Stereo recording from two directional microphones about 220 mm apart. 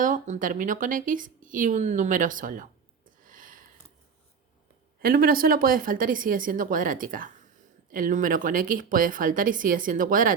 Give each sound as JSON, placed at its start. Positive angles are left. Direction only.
{"t": 0.0, "sound": "a woman's voice", "side_deg": -35}
{"t": 3.2, "sound": "a sound", "side_deg": -40}
{"t": 5.0, "sound": "a woman's voice", "side_deg": -40}